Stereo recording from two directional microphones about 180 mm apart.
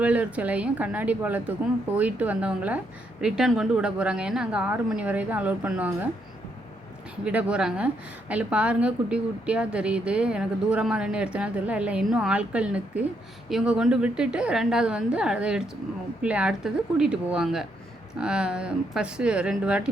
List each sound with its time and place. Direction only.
0.0 s a woman's voice: 10° right (ahead or behind)
7.3 s a woman's voice: 5° right (ahead or behind)